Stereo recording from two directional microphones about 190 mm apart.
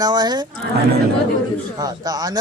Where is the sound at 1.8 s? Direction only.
20° right (ahead or behind).